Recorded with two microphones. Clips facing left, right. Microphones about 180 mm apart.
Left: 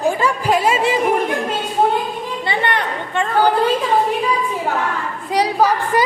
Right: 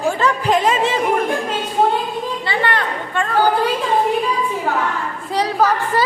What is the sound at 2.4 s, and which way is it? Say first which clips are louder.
Speech: left 2 dB; 20° left (ahead or behind).